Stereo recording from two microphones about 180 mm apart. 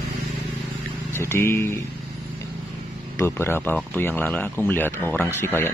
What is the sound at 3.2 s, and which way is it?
Speech, 15° left (ahead or behind).